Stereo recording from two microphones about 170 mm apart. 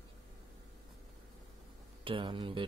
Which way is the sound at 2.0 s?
30° right (ahead or behind).